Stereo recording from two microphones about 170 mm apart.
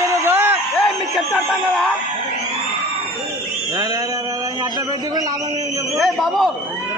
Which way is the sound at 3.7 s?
20° right (ahead or behind).